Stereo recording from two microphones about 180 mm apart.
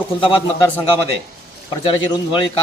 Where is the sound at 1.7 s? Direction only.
25° left (ahead or behind).